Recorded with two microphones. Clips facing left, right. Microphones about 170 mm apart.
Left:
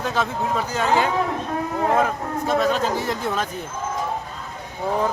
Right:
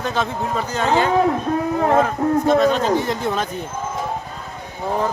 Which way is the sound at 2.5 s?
5° left (ahead or behind).